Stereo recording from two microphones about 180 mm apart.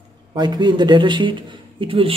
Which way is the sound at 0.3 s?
25° right (ahead or behind).